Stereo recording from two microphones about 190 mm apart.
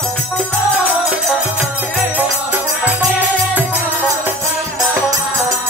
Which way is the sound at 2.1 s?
10° right (ahead or behind).